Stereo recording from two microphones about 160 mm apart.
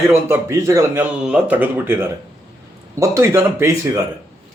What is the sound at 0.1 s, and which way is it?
Speech, 15° right (ahead or behind).